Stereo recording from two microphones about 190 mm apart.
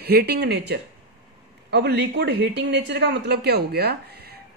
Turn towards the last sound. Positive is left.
turn(degrees=-55)  # may be behind; listen again after turning